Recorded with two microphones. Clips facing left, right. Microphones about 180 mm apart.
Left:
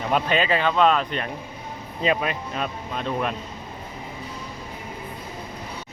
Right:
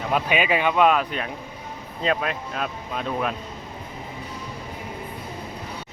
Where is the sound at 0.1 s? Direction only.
10° right (ahead or behind).